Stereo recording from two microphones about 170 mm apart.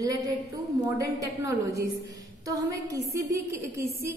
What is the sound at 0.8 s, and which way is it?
A woman's voice, 20° right (ahead or behind).